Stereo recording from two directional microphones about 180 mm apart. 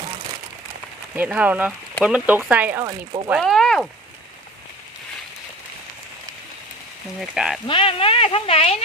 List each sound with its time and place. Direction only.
1.1 s speech: 10° right (ahead or behind)
3.4 s speech: centre (ahead or behind)
7.2 s speech: centre (ahead or behind)
7.7 s speech: 30° left (ahead or behind)